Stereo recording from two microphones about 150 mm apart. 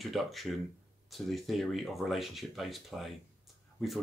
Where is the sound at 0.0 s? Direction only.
Centre (ahead or behind).